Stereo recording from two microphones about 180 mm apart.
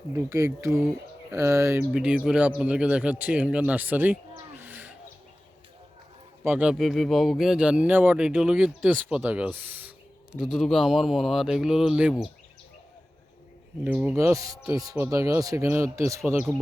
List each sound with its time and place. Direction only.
0.3 s speech: 15° right (ahead or behind)
6.4 s speech: 10° right (ahead or behind)
13.8 s speech: 10° right (ahead or behind)
14.3 s speech: 20° right (ahead or behind)